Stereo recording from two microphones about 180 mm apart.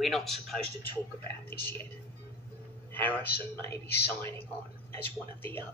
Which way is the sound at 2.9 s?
10° left (ahead or behind).